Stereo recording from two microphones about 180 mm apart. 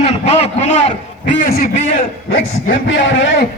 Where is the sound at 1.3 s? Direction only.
55° left (ahead or behind).